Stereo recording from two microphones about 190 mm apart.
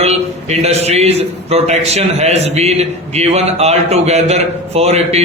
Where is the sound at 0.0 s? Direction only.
35° right (ahead or behind).